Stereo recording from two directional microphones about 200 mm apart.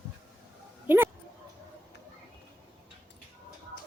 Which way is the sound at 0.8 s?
10° right (ahead or behind).